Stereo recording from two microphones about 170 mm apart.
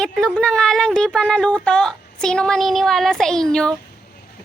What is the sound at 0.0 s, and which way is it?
Speech, 5° left (ahead or behind).